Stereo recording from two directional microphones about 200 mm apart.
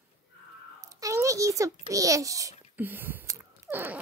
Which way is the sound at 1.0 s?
15° right (ahead or behind).